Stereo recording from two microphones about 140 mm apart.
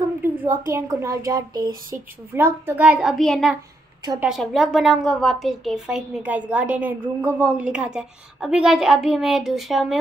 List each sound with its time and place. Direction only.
0.4 s a woman's voice: 15° right (ahead or behind)
2.3 s a child's voice: 15° right (ahead or behind)